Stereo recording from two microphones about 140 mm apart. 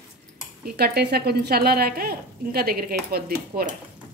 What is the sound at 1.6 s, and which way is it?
Speech, 90° right.